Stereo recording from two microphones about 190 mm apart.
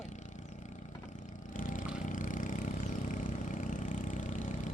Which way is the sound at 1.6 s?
45° left (ahead or behind).